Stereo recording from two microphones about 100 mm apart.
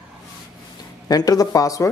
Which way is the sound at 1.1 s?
40° left (ahead or behind).